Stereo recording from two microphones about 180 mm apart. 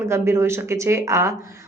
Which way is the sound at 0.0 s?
15° right (ahead or behind).